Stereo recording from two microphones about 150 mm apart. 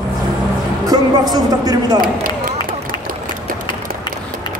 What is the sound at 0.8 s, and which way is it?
Speech, 25° right (ahead or behind).